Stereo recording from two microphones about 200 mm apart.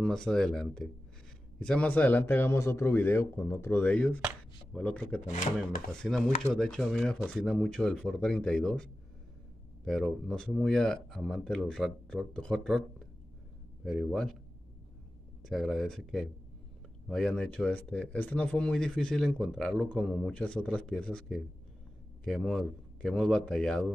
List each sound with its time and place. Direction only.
0.0 s speech: 5° left (ahead or behind)
5.2 s chopping: 40° left (ahead or behind)
6.0 s speech: centre (ahead or behind)
9.8 s speech: centre (ahead or behind)
15.4 s speech: centre (ahead or behind)